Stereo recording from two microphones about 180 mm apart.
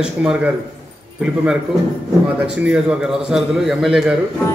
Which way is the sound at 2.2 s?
5° right (ahead or behind).